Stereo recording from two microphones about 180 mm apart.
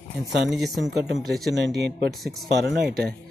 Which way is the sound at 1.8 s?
70° right (ahead or behind).